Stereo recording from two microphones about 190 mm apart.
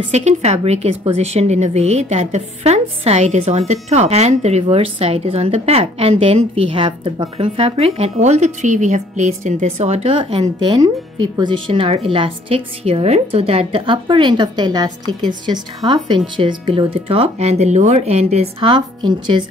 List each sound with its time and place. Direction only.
0.1 s a woman's voice: 35° right (ahead or behind)
10.4 s a woman's voice: 20° right (ahead or behind)